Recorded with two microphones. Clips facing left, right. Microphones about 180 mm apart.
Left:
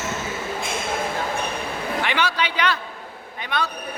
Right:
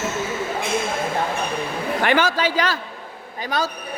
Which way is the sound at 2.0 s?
45° right (ahead or behind).